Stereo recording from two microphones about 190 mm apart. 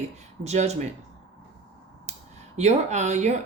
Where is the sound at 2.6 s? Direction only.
35° right (ahead or behind).